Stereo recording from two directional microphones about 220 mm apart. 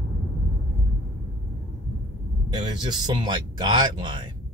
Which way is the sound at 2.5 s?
20° right (ahead or behind).